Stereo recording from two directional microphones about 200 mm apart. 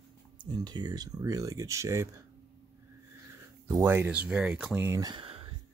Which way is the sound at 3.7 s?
15° right (ahead or behind).